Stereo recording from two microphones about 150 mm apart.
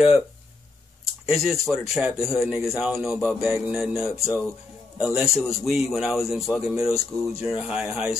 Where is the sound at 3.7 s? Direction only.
Centre (ahead or behind).